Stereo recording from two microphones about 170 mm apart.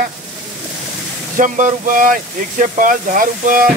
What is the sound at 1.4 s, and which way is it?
Speech, 50° right (ahead or behind).